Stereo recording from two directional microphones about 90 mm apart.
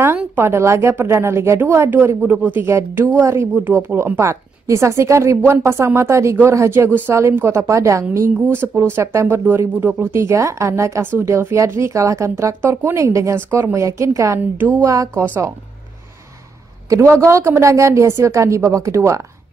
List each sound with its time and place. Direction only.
0.0 s a sound: 25° right (ahead or behind)
0.5 s a woman's voice: 30° right (ahead or behind)
16.9 s a woman's voice: 35° right (ahead or behind)